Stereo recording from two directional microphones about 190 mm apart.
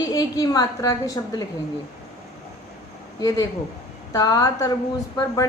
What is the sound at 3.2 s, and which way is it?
A woman's voice, 20° left (ahead or behind).